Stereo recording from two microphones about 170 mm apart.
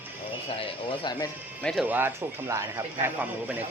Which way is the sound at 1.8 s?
10° right (ahead or behind).